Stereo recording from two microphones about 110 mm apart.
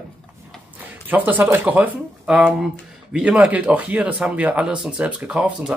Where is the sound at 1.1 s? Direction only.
15° right (ahead or behind).